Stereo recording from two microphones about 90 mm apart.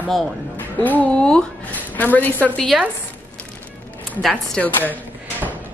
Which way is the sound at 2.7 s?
10° right (ahead or behind).